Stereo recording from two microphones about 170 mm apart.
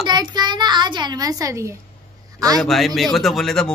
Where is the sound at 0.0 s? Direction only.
25° right (ahead or behind).